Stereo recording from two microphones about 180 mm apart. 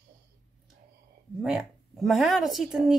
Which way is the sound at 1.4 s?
Centre (ahead or behind).